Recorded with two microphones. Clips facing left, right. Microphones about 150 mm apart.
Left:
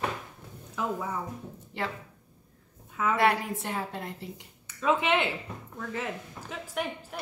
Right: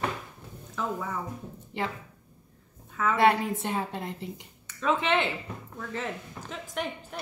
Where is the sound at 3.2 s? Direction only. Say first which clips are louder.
Right 4 dB; 25° right (ahead or behind).